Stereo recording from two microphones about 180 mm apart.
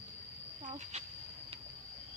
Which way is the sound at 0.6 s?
40° right (ahead or behind).